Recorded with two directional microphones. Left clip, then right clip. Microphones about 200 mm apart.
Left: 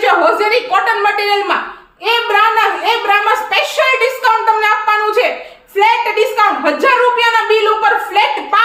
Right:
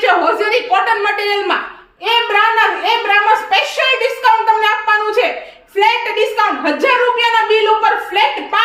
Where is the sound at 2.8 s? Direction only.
25° left (ahead or behind).